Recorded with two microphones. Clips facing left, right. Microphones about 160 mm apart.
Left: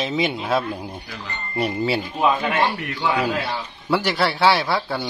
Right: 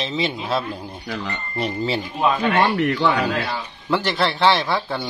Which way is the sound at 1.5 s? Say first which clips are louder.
Left 2 dB; 10° left (ahead or behind).